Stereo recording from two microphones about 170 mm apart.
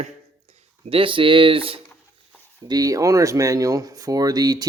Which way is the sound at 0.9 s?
30° right (ahead or behind).